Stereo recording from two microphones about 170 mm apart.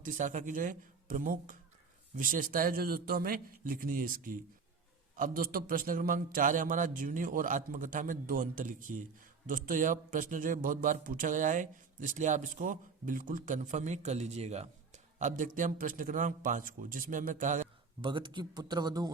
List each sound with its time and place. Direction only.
0.0 s a man's voice: 50° right (ahead or behind)
18.0 s a man's voice: 25° right (ahead or behind)